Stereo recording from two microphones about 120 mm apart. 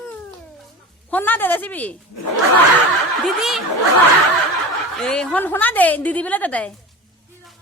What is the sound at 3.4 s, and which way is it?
Speech, centre (ahead or behind).